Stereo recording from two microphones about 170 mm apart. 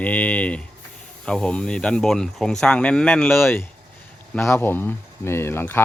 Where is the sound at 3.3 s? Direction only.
15° left (ahead or behind).